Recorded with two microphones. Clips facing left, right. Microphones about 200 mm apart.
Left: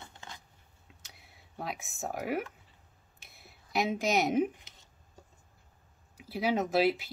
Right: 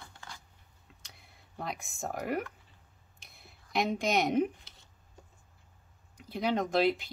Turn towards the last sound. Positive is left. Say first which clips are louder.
# even
turn(degrees=5)  # may be behind; listen again after turning